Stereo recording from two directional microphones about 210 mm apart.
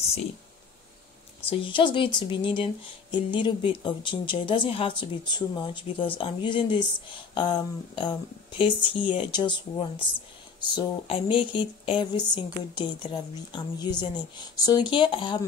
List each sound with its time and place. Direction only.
1.4 s speech: 25° left (ahead or behind)